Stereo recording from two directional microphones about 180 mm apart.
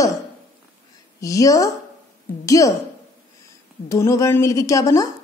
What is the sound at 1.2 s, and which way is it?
A woman's voice, 20° left (ahead or behind).